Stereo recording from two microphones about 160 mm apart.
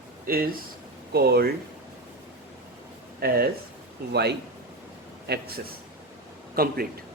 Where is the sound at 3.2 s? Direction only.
75° right (ahead or behind).